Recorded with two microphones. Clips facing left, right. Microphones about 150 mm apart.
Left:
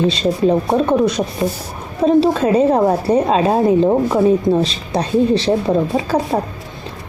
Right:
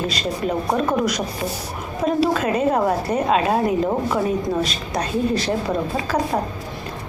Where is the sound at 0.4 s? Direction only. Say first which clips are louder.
Left 6 dB; 30° left (ahead or behind).